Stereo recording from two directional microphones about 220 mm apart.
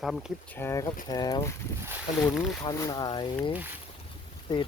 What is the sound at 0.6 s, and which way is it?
Speech, 10° left (ahead or behind).